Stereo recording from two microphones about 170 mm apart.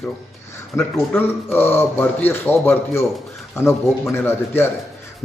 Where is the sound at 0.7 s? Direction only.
15° left (ahead or behind).